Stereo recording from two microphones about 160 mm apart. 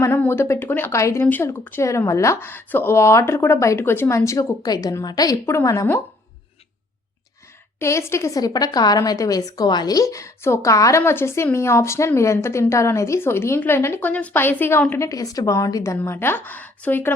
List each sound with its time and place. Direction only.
0.0 s a woman's voice: 15° left (ahead or behind)
7.8 s a woman's voice: 15° left (ahead or behind)